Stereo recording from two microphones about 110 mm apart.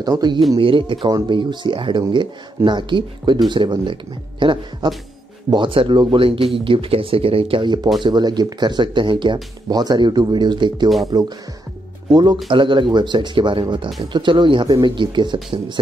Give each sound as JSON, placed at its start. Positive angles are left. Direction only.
{"t": 0.0, "sound": "speech", "side_deg": -40}
{"t": 0.6, "sound": "speech", "side_deg": -50}
{"t": 12.4, "sound": "speech", "side_deg": -50}